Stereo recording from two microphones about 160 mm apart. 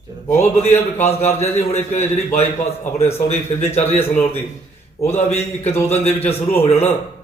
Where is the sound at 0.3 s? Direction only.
40° left (ahead or behind).